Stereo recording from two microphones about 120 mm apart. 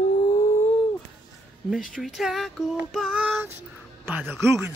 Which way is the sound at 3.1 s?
15° right (ahead or behind).